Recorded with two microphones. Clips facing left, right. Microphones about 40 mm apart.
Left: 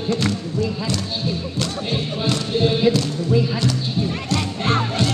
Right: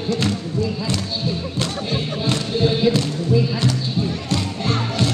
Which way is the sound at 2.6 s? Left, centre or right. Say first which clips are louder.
Left 1 dB; centre.